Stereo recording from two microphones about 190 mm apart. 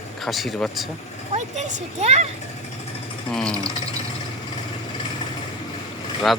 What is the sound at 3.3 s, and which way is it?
Speech, 5° left (ahead or behind).